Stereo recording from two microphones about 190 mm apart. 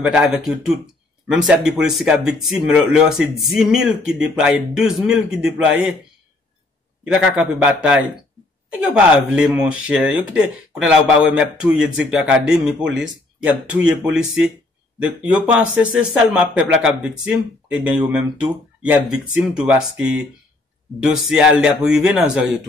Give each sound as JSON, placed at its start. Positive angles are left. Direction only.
{"t": 0.0, "sound": "speech", "side_deg": -5}
{"t": 7.1, "sound": "speech", "side_deg": -5}